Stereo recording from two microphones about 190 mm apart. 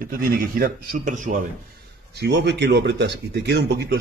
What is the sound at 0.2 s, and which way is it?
A man's voice, 50° right (ahead or behind).